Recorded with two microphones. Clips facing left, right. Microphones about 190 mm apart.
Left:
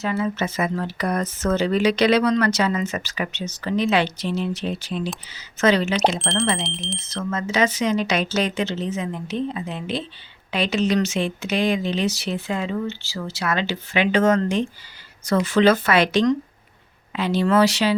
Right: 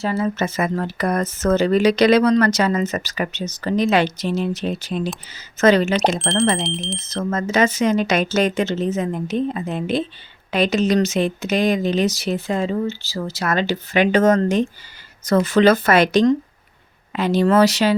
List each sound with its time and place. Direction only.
0.0 s speech: 35° right (ahead or behind)
6.1 s speech: centre (ahead or behind)
7.1 s speech: 40° right (ahead or behind)